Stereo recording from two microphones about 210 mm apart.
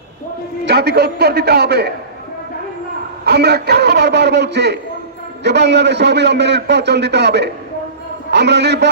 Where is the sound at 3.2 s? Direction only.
50° right (ahead or behind).